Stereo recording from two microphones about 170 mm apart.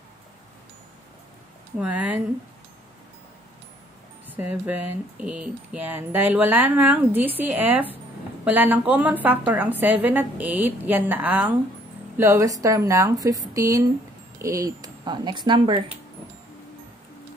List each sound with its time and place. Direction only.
1.8 s speech: 10° right (ahead or behind)
4.3 s speech: 10° right (ahead or behind); by 15.8 s 30° right (ahead or behind)